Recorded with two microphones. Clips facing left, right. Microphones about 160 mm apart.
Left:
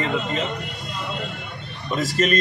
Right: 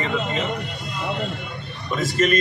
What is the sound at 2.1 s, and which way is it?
Speech, 35° left (ahead or behind).